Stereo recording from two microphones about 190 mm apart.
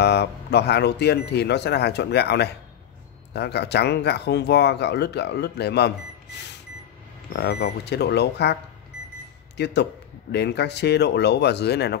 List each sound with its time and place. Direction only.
0.0 s speech: 60° left (ahead or behind)
7.3 s speech: 55° left (ahead or behind)
9.6 s speech: 60° left (ahead or behind)